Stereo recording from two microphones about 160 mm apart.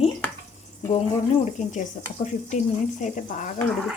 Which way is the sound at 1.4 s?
45° left (ahead or behind).